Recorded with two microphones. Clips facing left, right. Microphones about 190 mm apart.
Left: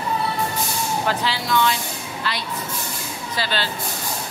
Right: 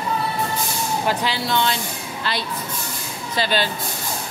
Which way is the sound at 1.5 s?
30° right (ahead or behind).